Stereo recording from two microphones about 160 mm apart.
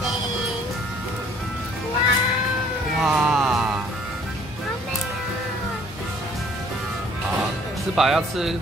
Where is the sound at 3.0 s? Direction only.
Centre (ahead or behind).